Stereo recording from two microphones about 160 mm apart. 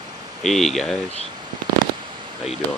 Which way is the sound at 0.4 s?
Centre (ahead or behind).